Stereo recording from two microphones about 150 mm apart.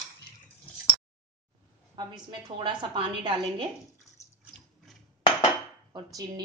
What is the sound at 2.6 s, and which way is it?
A woman's voice, 35° right (ahead or behind).